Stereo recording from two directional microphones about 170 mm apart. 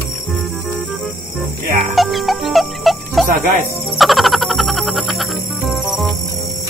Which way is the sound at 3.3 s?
50° right (ahead or behind).